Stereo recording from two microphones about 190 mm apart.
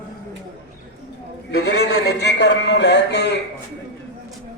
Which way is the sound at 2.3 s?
65° left (ahead or behind).